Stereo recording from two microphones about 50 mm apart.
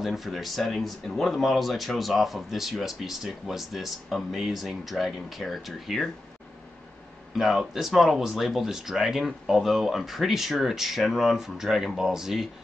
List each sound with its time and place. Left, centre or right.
0.0 s speech: centre
7.3 s speech: centre